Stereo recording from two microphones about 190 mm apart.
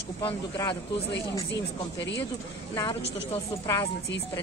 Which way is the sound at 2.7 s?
25° left (ahead or behind).